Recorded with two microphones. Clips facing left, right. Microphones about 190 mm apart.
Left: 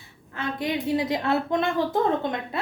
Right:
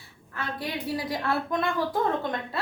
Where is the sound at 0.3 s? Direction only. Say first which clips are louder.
Left 5 dB; 20° left (ahead or behind).